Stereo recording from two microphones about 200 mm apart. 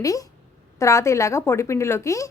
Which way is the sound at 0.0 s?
15° left (ahead or behind).